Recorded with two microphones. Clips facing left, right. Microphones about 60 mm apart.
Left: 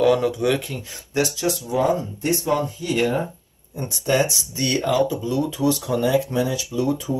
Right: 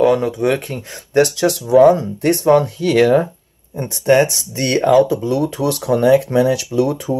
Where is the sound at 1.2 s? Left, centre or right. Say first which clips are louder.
Right 5 dB; right.